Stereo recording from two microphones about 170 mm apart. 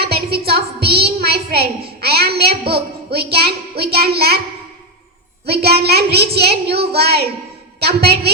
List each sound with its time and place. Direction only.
0.0 s a woman's voice: 70° right (ahead or behind)
5.5 s a child's voice: 70° right (ahead or behind)